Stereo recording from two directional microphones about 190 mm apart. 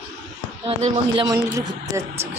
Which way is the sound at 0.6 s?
30° right (ahead or behind).